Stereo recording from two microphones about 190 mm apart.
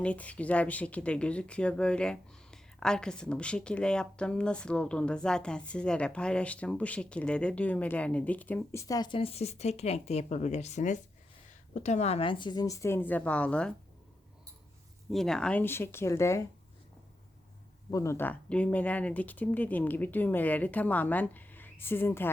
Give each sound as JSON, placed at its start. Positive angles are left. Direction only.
{"t": 0.0, "sound": "speech", "side_deg": 5}
{"t": 15.1, "sound": "speech", "side_deg": 5}
{"t": 17.9, "sound": "speech", "side_deg": 15}